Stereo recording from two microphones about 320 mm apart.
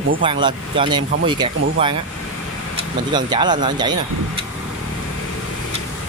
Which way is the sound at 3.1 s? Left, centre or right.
Centre.